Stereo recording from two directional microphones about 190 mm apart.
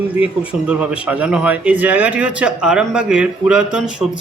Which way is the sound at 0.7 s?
5° right (ahead or behind).